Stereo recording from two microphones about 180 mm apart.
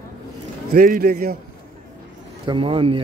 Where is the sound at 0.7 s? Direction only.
50° right (ahead or behind).